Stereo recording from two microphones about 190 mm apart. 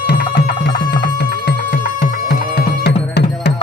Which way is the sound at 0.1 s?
55° left (ahead or behind).